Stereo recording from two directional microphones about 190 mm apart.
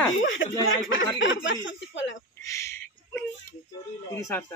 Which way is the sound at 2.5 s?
15° left (ahead or behind).